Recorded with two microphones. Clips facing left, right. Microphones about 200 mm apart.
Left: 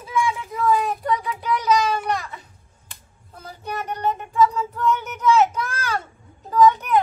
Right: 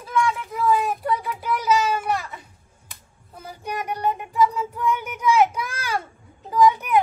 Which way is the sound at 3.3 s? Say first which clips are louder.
Even; 10° right (ahead or behind).